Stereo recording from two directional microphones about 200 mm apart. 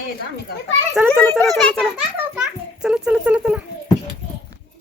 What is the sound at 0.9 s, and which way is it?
Children playing, centre (ahead or behind).